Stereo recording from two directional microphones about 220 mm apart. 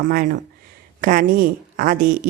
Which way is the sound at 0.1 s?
40° right (ahead or behind).